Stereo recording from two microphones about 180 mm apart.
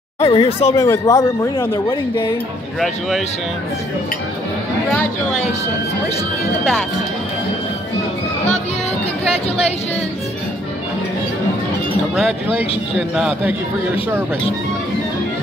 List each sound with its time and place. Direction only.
0.2 s speech: 35° left (ahead or behind)
0.7 s speech: 15° left (ahead or behind)
1.6 s speech: 30° left (ahead or behind)
12.2 s a man's voice: centre (ahead or behind)